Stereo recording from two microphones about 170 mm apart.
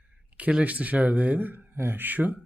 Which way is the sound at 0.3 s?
10° right (ahead or behind).